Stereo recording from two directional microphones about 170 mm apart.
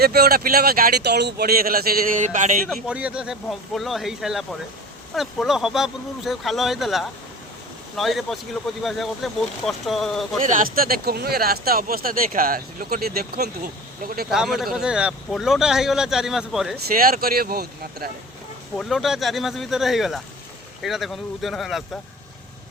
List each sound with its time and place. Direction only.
0.0 s speech: 65° right (ahead or behind); by 2.6 s 45° right (ahead or behind)
2.6 s speech: 5° right (ahead or behind)
10.4 s speech: 50° right (ahead or behind)
14.3 s speech: centre (ahead or behind)
16.7 s speech: 65° right (ahead or behind)
18.8 s speech: centre (ahead or behind)